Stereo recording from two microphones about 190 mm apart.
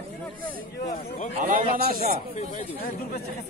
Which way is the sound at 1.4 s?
50° right (ahead or behind).